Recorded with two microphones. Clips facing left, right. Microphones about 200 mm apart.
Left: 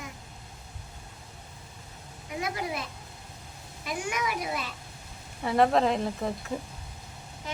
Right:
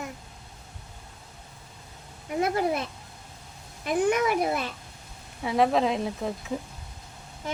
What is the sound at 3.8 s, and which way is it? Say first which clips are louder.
Speech: right 9 dB; 55° right (ahead or behind).